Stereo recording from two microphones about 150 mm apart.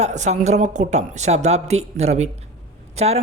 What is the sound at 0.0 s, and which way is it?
Speech, 50° right (ahead or behind).